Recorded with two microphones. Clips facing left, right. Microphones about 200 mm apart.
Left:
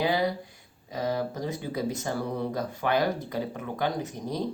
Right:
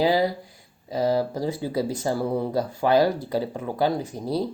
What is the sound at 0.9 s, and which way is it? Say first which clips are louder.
Speech: right 6 dB; 30° right (ahead or behind).